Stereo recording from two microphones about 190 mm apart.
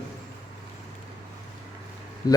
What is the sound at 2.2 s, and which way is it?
Speech, 20° left (ahead or behind).